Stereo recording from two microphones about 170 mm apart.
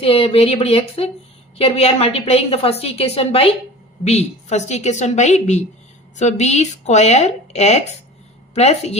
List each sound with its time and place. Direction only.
0.0 s a woman's voice: 35° left (ahead or behind)